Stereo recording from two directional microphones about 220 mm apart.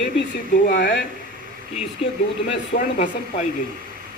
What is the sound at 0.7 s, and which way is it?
Speech, 50° left (ahead or behind).